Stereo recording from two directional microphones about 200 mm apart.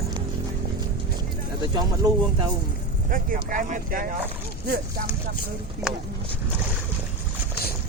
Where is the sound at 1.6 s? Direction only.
20° right (ahead or behind).